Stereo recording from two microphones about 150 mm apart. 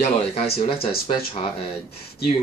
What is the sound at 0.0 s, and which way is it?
Speech, 45° left (ahead or behind).